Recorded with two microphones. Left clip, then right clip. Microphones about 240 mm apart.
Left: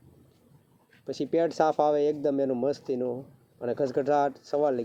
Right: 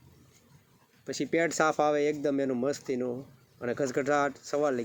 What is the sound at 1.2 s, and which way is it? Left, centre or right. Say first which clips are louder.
Speech: left 2 dB; right.